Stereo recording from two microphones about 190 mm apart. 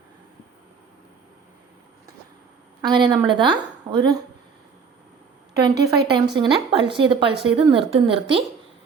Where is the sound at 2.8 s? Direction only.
25° right (ahead or behind).